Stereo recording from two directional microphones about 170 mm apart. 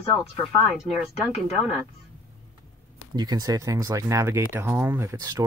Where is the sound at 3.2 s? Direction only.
20° right (ahead or behind).